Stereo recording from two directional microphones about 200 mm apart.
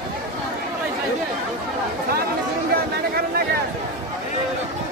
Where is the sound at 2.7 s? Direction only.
50° right (ahead or behind).